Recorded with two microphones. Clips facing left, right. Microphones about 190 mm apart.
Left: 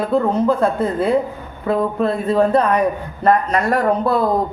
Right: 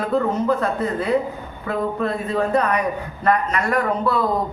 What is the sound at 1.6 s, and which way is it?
Speech, 30° left (ahead or behind).